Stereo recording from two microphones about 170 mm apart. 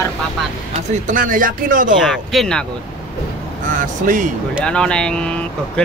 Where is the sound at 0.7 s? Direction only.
50° right (ahead or behind).